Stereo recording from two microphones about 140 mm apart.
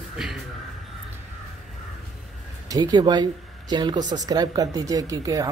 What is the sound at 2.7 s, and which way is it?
A woman's voice, 30° right (ahead or behind).